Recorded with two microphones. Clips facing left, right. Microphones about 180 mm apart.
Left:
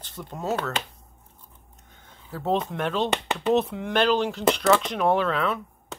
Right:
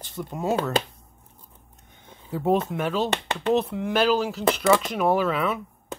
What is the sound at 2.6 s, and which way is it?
Speech, 5° right (ahead or behind).